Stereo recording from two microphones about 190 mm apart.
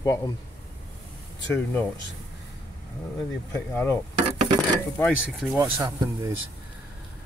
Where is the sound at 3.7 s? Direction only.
15° left (ahead or behind).